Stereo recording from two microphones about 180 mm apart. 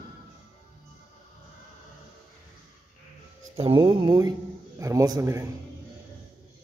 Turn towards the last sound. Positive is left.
turn(degrees=-20)  # may be behind; listen again after turning